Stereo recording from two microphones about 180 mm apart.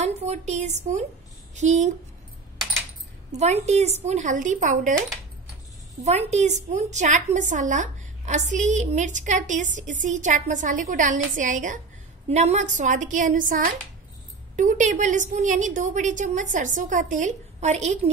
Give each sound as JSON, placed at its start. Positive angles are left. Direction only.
{"t": 0.0, "sound": "a woman's voice", "side_deg": -40}
{"t": 3.3, "sound": "a woman's voice", "side_deg": -40}
{"t": 6.0, "sound": "a woman's voice", "side_deg": -40}